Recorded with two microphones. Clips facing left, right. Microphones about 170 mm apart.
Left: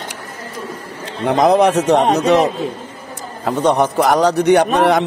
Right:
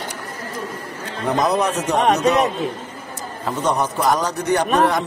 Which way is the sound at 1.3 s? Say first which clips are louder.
Left 7 dB; 80° left.